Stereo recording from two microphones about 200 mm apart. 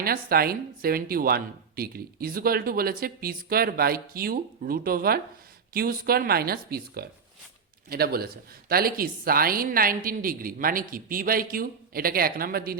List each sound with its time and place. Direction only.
0.0 s a woman's voice: 50° right (ahead or behind)